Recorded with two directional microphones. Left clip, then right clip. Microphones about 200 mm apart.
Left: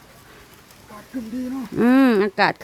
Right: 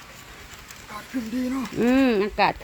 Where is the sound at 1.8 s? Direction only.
30° left (ahead or behind).